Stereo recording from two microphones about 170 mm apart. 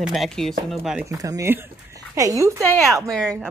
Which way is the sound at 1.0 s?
20° right (ahead or behind).